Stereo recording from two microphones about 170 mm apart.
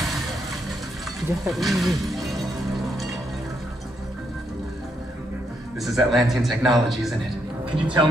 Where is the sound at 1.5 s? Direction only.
Centre (ahead or behind).